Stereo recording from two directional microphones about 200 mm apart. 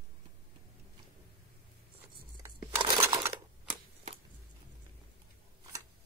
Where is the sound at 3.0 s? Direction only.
15° right (ahead or behind).